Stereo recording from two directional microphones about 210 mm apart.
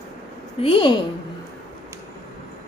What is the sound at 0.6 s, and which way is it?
Speech, 25° left (ahead or behind).